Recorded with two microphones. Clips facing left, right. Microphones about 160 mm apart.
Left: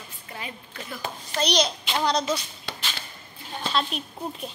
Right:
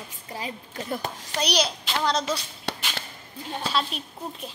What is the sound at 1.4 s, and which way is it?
Speech, 5° right (ahead or behind).